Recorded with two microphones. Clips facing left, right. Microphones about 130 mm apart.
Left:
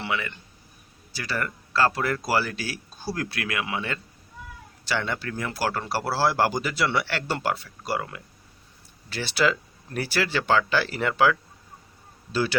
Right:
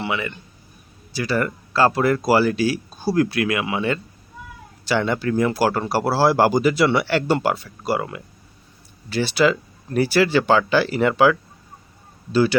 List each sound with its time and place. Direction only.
0.0 s a man's voice: 10° right (ahead or behind)
9.0 s speech: centre (ahead or behind)
12.3 s speech: centre (ahead or behind)